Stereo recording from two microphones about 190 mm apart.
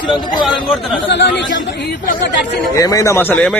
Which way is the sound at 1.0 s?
65° left (ahead or behind).